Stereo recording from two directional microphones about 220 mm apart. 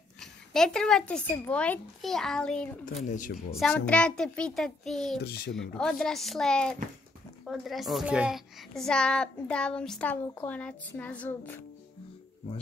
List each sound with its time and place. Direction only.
0.2 s a woman's voice: centre (ahead or behind)
3.1 s speech: 35° left (ahead or behind)
3.3 s a woman's voice: centre (ahead or behind)
5.2 s speech: 45° left (ahead or behind)
5.5 s a woman's voice: centre (ahead or behind)